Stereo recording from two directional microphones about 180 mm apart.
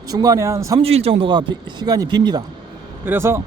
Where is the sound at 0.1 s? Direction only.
20° right (ahead or behind).